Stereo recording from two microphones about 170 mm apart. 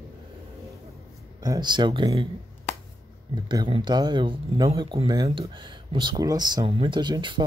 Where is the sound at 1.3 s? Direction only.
25° right (ahead or behind).